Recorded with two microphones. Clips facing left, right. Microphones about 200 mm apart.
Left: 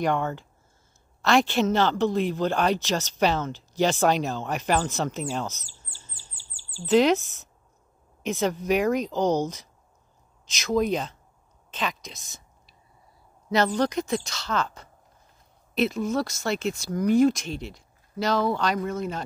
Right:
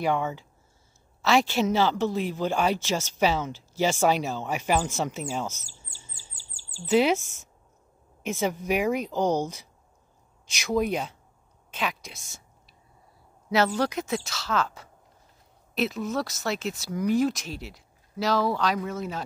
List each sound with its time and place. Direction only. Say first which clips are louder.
0.0 s speech: left 1 dB; 5° right (ahead or behind)
5.9 s chirp: even; 10° right (ahead or behind)
6.3 s bird vocalization: right 1 dB; 40° right (ahead or behind)
6.9 s speech: left 2 dB; 10° right (ahead or behind)
13.5 s speech: left 1 dB; 5° right (ahead or behind)